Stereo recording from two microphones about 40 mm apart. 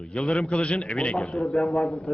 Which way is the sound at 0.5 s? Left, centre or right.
Left.